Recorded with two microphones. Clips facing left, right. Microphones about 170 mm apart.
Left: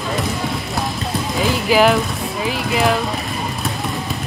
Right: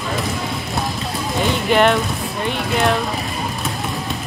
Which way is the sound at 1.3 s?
Centre (ahead or behind).